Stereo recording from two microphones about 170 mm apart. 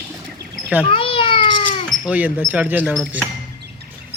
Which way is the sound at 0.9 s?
30° left (ahead or behind).